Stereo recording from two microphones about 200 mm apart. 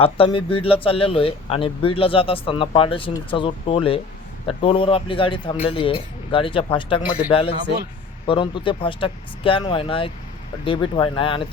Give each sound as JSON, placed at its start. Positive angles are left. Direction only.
{"t": 0.0, "sound": "speech", "side_deg": 25}